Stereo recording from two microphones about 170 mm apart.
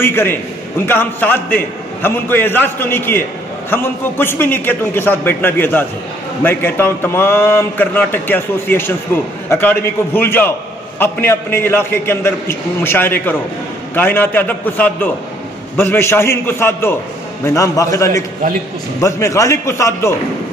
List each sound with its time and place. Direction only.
0.0 s a man's voice: 15° left (ahead or behind)